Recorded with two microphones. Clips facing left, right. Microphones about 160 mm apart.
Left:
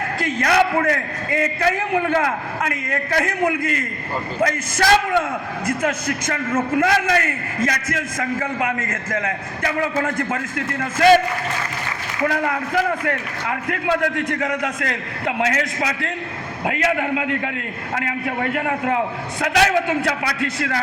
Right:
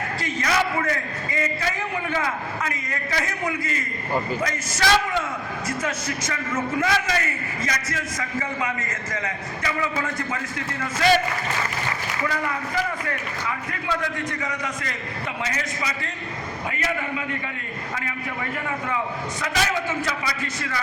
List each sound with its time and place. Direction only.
0.2 s a man's voice: 60° left (ahead or behind)
12.2 s a man's voice: 60° left (ahead or behind); by 17.5 s 75° left (ahead or behind)
17.9 s a man's voice: 65° left (ahead or behind)